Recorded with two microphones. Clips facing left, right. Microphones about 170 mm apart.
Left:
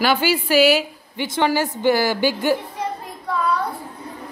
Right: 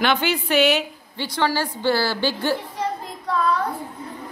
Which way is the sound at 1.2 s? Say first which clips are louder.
Left 3 dB; 15° left (ahead or behind).